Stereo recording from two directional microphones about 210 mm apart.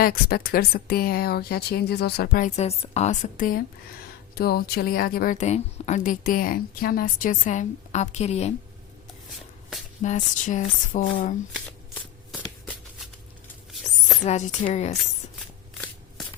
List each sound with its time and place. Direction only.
0.0 s speech: 45° left (ahead or behind)
2.6 s speech: 30° left (ahead or behind)
10.0 s speech: 35° left (ahead or behind)
14.3 s speech: 35° left (ahead or behind)